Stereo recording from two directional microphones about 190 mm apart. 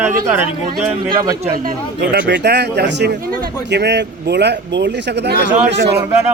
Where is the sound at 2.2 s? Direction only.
60° right (ahead or behind).